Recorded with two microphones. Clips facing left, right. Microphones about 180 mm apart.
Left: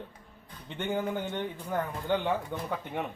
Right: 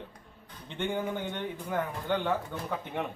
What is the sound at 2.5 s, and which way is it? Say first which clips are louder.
Speech: left 2 dB; 15° left (ahead or behind).